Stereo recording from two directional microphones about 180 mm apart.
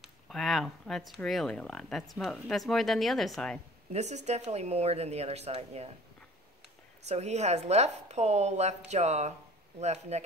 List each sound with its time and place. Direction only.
0.0 s speech: centre (ahead or behind)
3.9 s a woman's voice: 40° right (ahead or behind)
7.1 s a woman's voice: 35° right (ahead or behind)